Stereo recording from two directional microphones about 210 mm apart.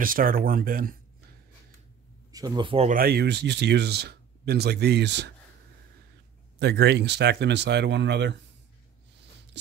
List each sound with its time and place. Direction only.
0.0 s speech: 40° right (ahead or behind)
2.3 s speech: 20° right (ahead or behind)
2.9 s speech: 45° right (ahead or behind)
6.6 s speech: 50° right (ahead or behind)